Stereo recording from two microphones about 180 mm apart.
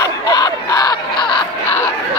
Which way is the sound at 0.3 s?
20° left (ahead or behind).